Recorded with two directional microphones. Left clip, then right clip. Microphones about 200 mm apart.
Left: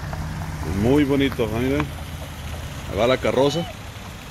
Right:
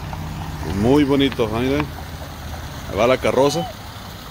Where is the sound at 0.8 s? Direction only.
15° right (ahead or behind).